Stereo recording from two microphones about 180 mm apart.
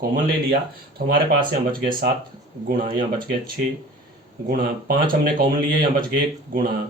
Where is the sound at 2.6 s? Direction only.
50° right (ahead or behind).